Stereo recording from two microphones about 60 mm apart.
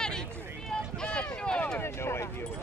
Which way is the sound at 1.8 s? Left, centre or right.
Left.